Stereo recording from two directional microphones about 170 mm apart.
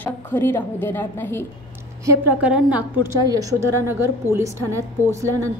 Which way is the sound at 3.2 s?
20° right (ahead or behind).